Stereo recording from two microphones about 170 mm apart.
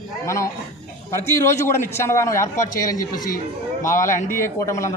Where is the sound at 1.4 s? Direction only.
15° left (ahead or behind).